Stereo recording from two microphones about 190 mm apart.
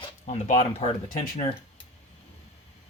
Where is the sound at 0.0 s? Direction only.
35° left (ahead or behind).